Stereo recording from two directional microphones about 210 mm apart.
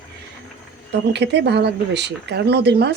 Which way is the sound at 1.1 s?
55° right (ahead or behind).